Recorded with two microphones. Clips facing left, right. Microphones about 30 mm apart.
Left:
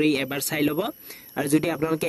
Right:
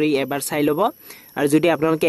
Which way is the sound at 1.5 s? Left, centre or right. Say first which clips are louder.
Right 6 dB; right.